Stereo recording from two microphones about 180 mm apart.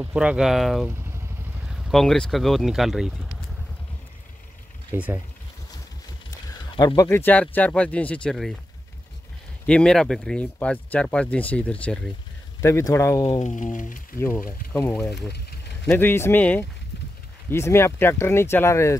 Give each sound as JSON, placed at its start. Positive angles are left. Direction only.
{"t": 0.0, "sound": "speech", "side_deg": -5}
{"t": 4.9, "sound": "speech", "side_deg": -10}
{"t": 6.6, "sound": "speech", "side_deg": 25}
{"t": 9.7, "sound": "speech", "side_deg": 5}
{"t": 13.4, "sound": "a sound", "side_deg": 45}
{"t": 14.1, "sound": "speech", "side_deg": 15}